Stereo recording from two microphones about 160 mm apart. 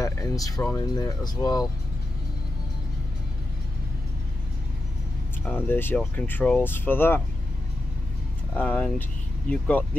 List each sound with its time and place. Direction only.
0.0 s music: 20° left (ahead or behind)
0.6 s speech: 10° left (ahead or behind)
0.9 s speech: 25° left (ahead or behind)
5.4 s speech: 15° left (ahead or behind)
8.5 s speech: 10° left (ahead or behind)